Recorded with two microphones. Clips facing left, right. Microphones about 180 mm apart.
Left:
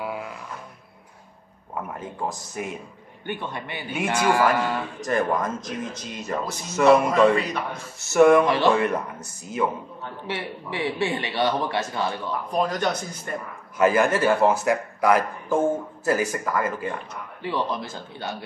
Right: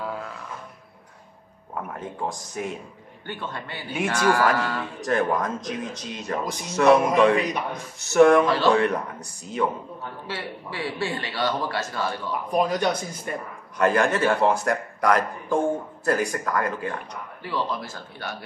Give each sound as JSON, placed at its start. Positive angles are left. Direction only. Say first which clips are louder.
{"t": 0.0, "sound": "a sound", "louder": "left 1 dB", "side_deg": 10}
{"t": 1.8, "sound": "a man's voice", "louder": "even", "side_deg": 0}
{"t": 3.3, "sound": "speech", "louder": "left 2 dB", "side_deg": 20}
{"t": 5.0, "sound": "a man's voice", "louder": "right 1 dB", "side_deg": 0}
{"t": 10.2, "sound": "a man's voice", "louder": "left 4 dB", "side_deg": 20}
{"t": 12.4, "sound": "speech", "louder": "right 2 dB", "side_deg": -10}
{"t": 13.7, "sound": "a man's voice", "louder": "left 1 dB", "side_deg": 5}
{"t": 17.4, "sound": "a man's voice", "louder": "left 2 dB", "side_deg": 20}